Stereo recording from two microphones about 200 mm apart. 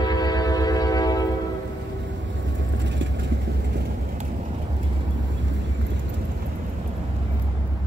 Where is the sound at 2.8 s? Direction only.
65° right (ahead or behind).